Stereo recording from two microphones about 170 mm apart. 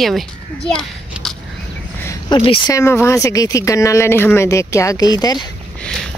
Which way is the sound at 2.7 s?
15° left (ahead or behind).